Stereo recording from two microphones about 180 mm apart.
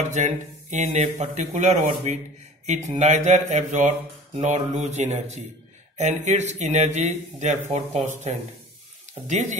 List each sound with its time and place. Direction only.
0.0 s speech: 40° right (ahead or behind)